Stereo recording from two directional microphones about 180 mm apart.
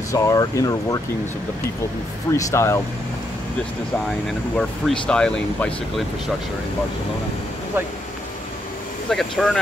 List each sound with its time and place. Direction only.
0.1 s speech: 20° left (ahead or behind)
2.3 s speech: 15° left (ahead or behind)
4.3 s speech: 5° left (ahead or behind)
9.1 s speech: centre (ahead or behind)